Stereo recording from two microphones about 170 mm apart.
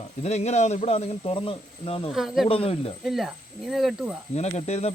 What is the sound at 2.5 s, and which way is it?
Speech, 35° left (ahead or behind).